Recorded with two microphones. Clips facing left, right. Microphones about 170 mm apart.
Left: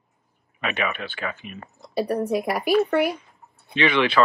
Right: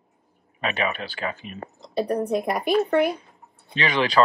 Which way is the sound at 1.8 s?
5° left (ahead or behind).